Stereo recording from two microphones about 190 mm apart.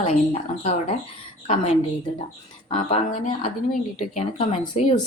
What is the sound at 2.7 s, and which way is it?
Speech, 30° left (ahead or behind).